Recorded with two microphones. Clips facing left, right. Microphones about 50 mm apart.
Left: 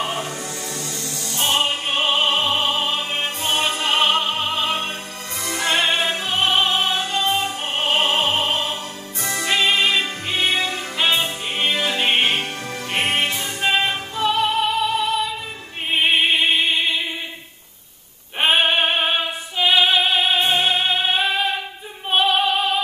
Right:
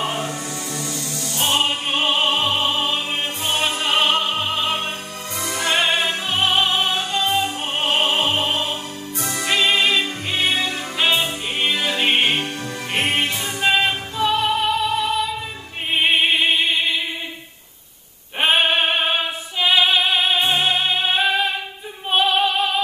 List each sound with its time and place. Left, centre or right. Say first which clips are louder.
1.3 s music: even; centre
13.0 s music: even; centre
18.4 s a sound: even; centre
19.6 s music: even; centre
20.3 s music: even; centre
20.6 s music: even; centre
22.1 s female singing: even; centre